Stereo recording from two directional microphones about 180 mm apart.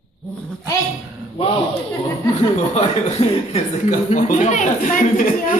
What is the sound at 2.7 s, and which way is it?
A man's voice, 35° left (ahead or behind).